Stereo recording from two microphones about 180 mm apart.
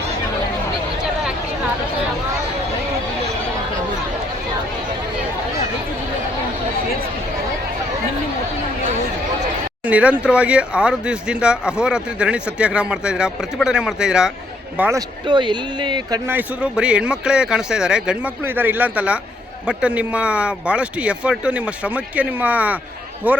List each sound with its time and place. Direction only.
9.8 s speech: 10° right (ahead or behind)
15.3 s speech: 25° right (ahead or behind)
16.3 s speech: 5° right (ahead or behind)